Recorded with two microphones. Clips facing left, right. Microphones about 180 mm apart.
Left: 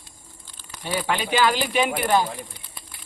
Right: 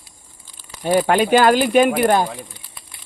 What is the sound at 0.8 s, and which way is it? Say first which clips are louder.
Speech: right 10 dB; 50° right (ahead or behind).